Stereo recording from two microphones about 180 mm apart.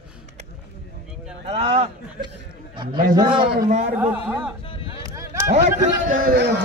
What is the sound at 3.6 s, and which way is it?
Speech, 40° right (ahead or behind).